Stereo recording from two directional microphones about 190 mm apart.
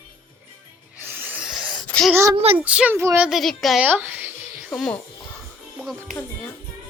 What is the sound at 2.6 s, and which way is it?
A child's voice, 5° right (ahead or behind).